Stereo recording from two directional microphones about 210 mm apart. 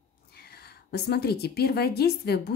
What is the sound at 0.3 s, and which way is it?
A woman's voice, 50° left (ahead or behind).